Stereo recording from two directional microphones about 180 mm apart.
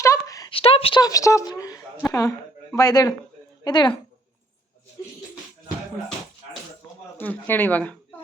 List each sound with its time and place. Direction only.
0.0 s a sound: 20° left (ahead or behind)
0.5 s a woman's voice: 30° left (ahead or behind)
7.2 s speech: 10° left (ahead or behind)